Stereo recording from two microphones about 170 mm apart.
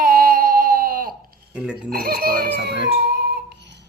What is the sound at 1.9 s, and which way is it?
Music, 60° right (ahead or behind).